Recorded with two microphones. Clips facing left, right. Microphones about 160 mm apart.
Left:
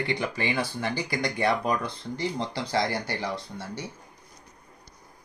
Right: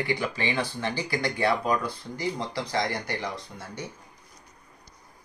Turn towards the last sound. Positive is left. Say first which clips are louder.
# left 2 dB
turn(degrees=30)  # may be behind; listen again after turning